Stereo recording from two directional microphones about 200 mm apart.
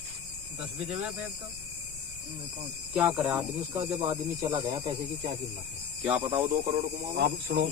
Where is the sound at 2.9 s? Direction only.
5° right (ahead or behind); by 5.4 s 25° right (ahead or behind).